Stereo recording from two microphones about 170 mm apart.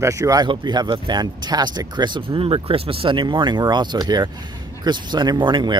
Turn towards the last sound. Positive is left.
turn(degrees=-25)  # may be behind; listen again after turning